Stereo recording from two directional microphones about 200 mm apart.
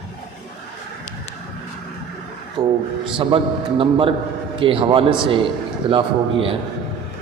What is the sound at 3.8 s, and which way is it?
A man's voice, 25° right (ahead or behind).